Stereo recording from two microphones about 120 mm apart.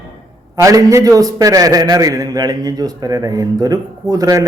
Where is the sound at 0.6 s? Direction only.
25° right (ahead or behind).